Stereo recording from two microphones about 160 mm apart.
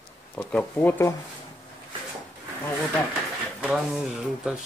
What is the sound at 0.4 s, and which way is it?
Speech, 5° left (ahead or behind).